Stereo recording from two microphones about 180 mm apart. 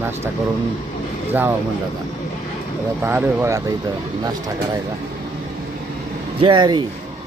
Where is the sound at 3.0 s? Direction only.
10° right (ahead or behind).